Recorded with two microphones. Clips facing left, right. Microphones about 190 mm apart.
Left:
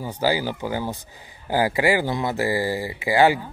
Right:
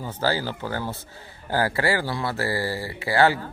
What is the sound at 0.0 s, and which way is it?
Speech, 15° left (ahead or behind).